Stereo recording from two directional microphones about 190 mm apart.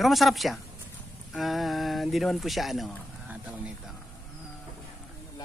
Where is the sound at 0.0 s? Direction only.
Centre (ahead or behind).